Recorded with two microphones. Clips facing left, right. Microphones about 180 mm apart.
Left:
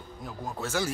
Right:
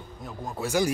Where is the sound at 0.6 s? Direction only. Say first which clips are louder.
Right 5 dB; 15° right (ahead or behind).